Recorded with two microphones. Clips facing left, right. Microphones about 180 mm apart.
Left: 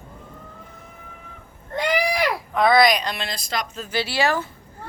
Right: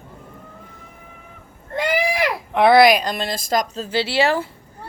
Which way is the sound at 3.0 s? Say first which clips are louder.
Right 5 dB; 45° right (ahead or behind).